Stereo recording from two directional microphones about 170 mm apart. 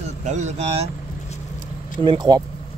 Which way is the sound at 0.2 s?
45° right (ahead or behind).